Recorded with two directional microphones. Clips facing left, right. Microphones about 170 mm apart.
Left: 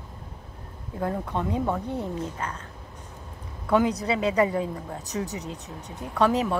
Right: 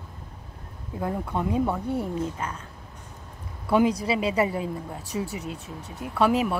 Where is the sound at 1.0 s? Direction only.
15° right (ahead or behind).